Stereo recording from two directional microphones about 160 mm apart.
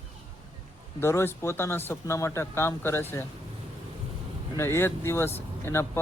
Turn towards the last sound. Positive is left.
turn(degrees=15)  # may be behind; listen again after turning